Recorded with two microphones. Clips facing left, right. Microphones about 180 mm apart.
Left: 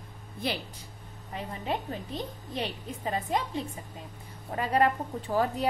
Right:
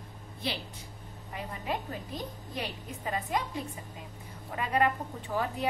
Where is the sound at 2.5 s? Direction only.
30° left (ahead or behind).